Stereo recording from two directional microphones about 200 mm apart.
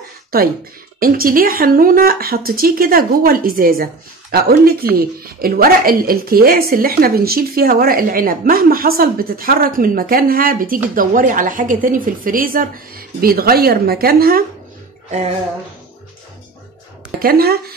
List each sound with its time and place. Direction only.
0.3 s a woman's voice: 50° right (ahead or behind)
17.2 s a woman's voice: 50° right (ahead or behind)